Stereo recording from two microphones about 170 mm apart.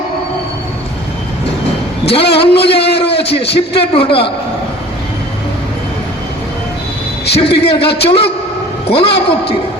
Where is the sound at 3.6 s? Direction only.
35° left (ahead or behind).